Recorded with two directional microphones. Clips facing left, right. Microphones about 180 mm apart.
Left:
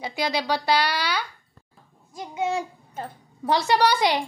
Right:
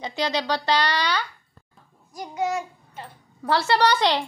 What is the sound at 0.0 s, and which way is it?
A woman's voice, 10° left (ahead or behind).